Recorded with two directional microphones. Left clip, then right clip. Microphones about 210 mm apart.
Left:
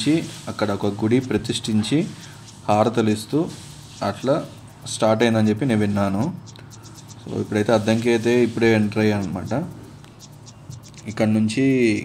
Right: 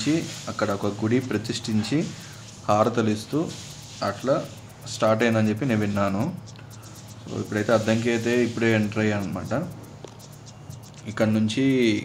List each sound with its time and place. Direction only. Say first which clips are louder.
0.0 s speech: left 4 dB; 15° left (ahead or behind)
7.3 s speech: left 3 dB; 20° left (ahead or behind)
11.1 s speech: left 2 dB; 15° left (ahead or behind)